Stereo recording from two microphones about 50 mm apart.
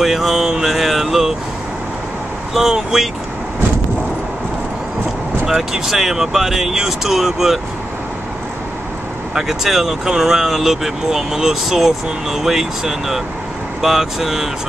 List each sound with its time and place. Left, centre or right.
0.0 s a sound: centre
2.5 s speech: centre
5.5 s speech: centre
9.3 s speech: centre